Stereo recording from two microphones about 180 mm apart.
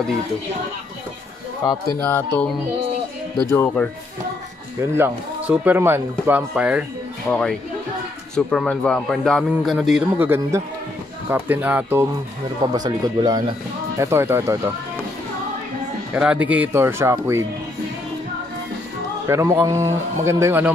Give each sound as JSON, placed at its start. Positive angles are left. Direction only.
{"t": 2.0, "sound": "speech", "side_deg": 10}
{"t": 4.9, "sound": "speech", "side_deg": -10}
{"t": 7.2, "sound": "a man's voice", "side_deg": 5}
{"t": 12.7, "sound": "speech", "side_deg": -20}
{"t": 16.1, "sound": "speech", "side_deg": -5}
{"t": 19.2, "sound": "speech", "side_deg": -15}